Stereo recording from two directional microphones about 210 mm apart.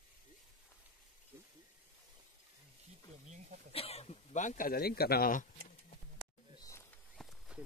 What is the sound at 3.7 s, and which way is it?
A man's voice, 30° left (ahead or behind).